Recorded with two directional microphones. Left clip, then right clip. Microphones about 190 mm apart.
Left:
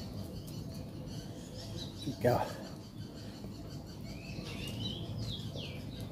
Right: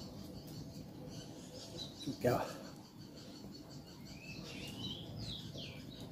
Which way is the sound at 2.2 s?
5° right (ahead or behind).